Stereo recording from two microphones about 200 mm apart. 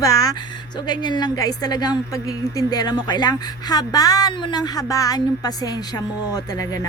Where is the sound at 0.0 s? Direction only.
15° left (ahead or behind).